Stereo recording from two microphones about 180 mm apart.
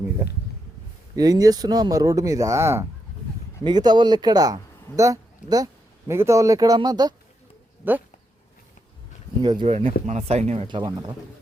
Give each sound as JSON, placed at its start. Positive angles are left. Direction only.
{"t": 1.1, "sound": "a man's voice", "side_deg": -20}
{"t": 7.8, "sound": "speech", "side_deg": -10}
{"t": 9.4, "sound": "speech", "side_deg": -25}
{"t": 10.8, "sound": "speech", "side_deg": -20}